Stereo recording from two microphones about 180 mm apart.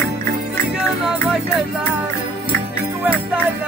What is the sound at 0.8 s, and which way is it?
Music, 5° right (ahead or behind).